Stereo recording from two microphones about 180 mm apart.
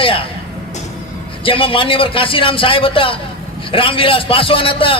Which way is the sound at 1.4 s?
30° left (ahead or behind).